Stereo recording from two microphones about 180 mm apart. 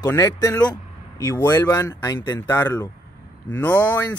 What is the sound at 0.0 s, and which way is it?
Speech, 15° left (ahead or behind).